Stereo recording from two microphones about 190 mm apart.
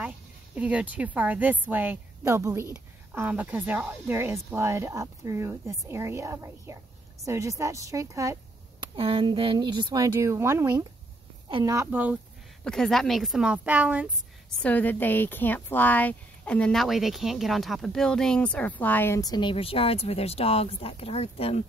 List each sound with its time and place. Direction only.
0.6 s a woman's voice: 5° right (ahead or behind)
8.9 s a woman's voice: 25° right (ahead or behind); by 12.2 s 10° right (ahead or behind)
12.6 s a woman's voice: 5° left (ahead or behind)
14.6 s a woman's voice: 10° left (ahead or behind); by 21.6 s 30° left (ahead or behind)